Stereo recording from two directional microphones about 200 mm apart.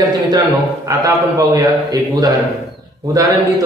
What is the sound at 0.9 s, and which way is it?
A man's voice, 15° right (ahead or behind).